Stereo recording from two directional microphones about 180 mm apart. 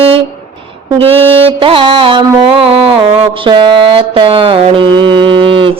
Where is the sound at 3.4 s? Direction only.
25° right (ahead or behind).